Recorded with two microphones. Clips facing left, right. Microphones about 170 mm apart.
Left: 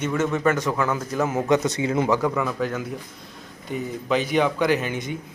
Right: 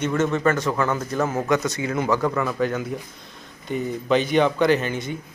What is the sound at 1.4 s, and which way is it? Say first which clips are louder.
Speech: left 2 dB; 25° left (ahead or behind).